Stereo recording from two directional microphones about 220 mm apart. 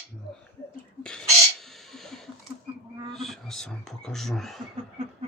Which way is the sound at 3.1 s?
Centre (ahead or behind).